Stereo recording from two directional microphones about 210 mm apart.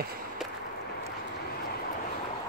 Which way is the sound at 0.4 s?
Centre (ahead or behind).